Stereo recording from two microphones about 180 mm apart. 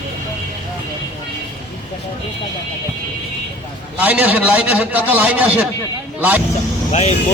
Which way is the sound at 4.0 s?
10° right (ahead or behind).